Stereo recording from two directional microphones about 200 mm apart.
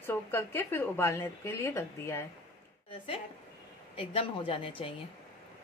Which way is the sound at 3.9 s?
25° left (ahead or behind).